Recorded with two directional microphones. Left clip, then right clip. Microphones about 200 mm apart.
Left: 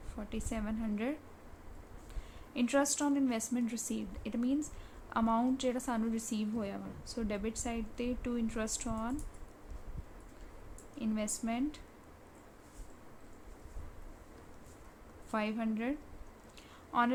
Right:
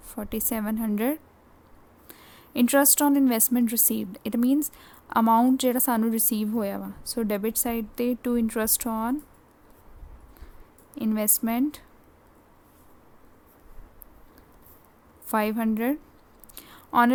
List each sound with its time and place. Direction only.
0.1 s a woman's voice: 60° right (ahead or behind)
10.9 s a woman's voice: 55° right (ahead or behind)
15.3 s a woman's voice: 60° right (ahead or behind)
16.6 s a sound: 60° right (ahead or behind)